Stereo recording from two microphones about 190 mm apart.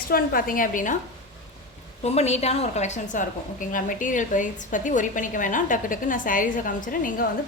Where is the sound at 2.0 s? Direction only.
35° left (ahead or behind).